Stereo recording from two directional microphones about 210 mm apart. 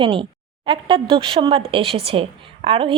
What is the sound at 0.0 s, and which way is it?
A woman's voice, 25° right (ahead or behind).